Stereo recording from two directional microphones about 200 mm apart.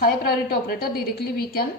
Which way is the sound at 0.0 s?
50° left (ahead or behind).